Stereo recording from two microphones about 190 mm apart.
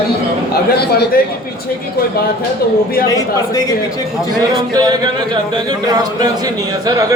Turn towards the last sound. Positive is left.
turn(degrees=-20)  # may be behind; listen again after turning